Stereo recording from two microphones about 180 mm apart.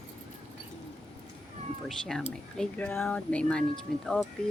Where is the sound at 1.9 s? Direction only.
Centre (ahead or behind).